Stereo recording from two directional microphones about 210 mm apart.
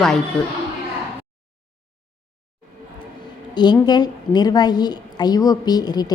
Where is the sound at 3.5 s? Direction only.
20° left (ahead or behind).